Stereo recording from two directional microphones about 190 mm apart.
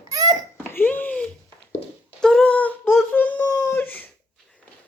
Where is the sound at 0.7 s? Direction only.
10° left (ahead or behind).